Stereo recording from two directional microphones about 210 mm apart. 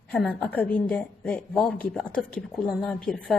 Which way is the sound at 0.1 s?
5° left (ahead or behind).